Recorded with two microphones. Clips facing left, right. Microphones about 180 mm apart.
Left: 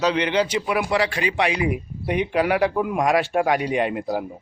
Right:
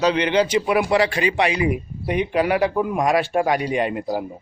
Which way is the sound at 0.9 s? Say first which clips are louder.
Right 3 dB; 45° right (ahead or behind).